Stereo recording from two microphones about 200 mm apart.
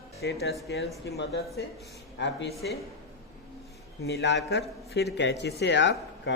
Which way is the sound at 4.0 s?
55° left (ahead or behind).